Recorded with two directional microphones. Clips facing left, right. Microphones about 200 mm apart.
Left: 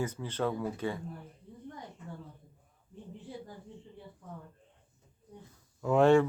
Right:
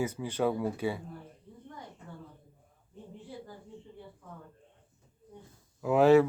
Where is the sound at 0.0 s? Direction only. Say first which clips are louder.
Right 3 dB; 10° right (ahead or behind).